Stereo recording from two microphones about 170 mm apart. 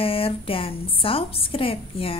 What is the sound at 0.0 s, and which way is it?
A woman's voice, 35° left (ahead or behind).